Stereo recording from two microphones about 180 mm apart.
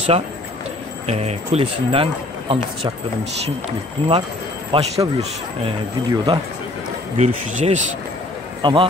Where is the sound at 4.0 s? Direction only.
30° right (ahead or behind).